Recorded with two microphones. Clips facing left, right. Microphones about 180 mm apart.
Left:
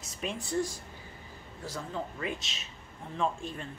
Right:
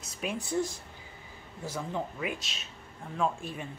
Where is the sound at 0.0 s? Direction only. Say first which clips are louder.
Right 1 dB; centre (ahead or behind).